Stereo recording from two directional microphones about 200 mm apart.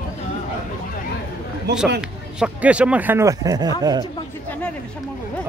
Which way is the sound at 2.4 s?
5° right (ahead or behind).